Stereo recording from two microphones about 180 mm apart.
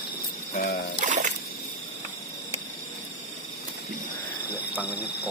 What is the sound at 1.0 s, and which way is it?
Music, 45° right (ahead or behind).